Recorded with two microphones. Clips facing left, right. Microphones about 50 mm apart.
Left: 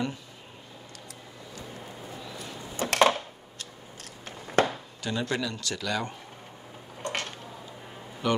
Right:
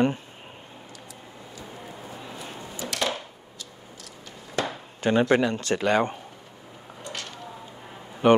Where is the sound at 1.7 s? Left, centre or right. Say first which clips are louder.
Right 3 dB; centre.